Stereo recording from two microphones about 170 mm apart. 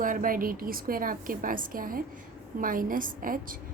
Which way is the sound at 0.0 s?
55° right (ahead or behind).